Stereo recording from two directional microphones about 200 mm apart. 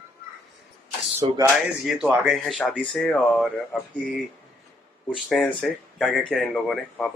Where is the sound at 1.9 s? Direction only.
5° right (ahead or behind).